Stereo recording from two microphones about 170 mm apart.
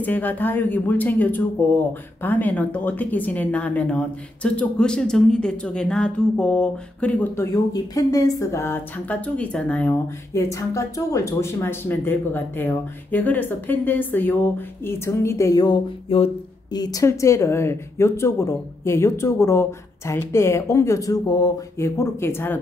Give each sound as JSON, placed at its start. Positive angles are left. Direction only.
{"t": 0.0, "sound": "speech", "side_deg": 10}
{"t": 7.5, "sound": "speech", "side_deg": 20}